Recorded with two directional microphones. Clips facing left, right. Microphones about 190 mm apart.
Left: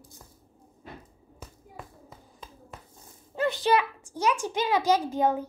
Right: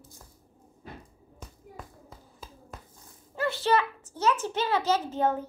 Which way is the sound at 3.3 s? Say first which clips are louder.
Left 2 dB; 15° left (ahead or behind).